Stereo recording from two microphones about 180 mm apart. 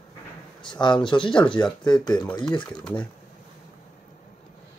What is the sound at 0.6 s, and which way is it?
Speech, 25° left (ahead or behind).